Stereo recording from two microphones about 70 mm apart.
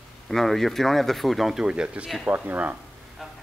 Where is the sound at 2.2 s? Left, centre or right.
Right.